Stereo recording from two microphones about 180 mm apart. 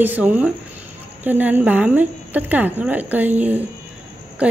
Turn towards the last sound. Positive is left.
turn(degrees=-5)  # may be behind; listen again after turning